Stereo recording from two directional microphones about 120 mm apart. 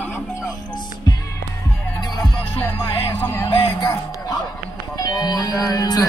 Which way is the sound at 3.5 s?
50° left (ahead or behind).